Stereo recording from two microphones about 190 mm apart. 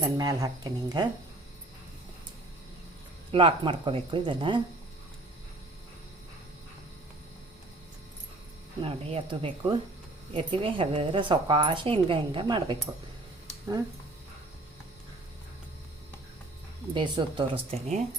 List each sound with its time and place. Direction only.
0.0 s speech: 20° right (ahead or behind)
3.3 s speech: 25° right (ahead or behind)
8.8 s speech: 30° right (ahead or behind)
16.9 s speech: 25° right (ahead or behind)